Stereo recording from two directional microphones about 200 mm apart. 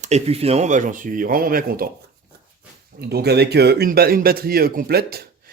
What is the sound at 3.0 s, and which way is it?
Speech, 55° right (ahead or behind).